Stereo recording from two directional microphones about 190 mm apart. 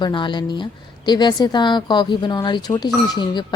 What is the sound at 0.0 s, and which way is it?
A woman's voice, 25° left (ahead or behind).